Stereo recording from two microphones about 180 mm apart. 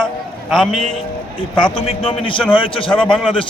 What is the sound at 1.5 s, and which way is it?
A man's voice, 30° left (ahead or behind).